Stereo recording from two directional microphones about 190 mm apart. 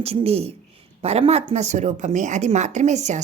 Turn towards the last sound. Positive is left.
turn(degrees=-35)  # may be behind; listen again after turning